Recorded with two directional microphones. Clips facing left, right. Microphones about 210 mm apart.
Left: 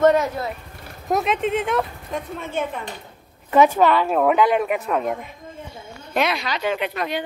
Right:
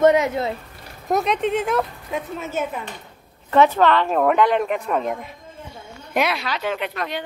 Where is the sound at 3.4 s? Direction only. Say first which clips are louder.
Even; 10° left (ahead or behind).